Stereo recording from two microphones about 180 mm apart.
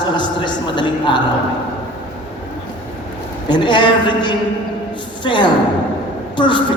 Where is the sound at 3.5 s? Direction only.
25° left (ahead or behind).